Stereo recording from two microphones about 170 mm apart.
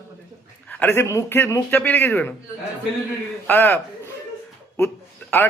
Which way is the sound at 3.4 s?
10° left (ahead or behind).